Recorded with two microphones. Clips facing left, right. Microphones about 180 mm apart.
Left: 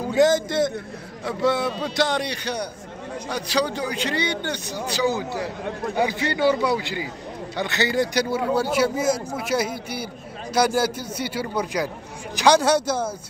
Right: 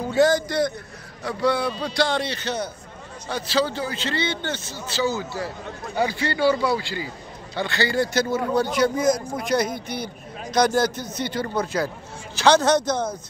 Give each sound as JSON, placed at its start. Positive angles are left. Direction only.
{"t": 0.0, "sound": "a man's voice", "side_deg": 15}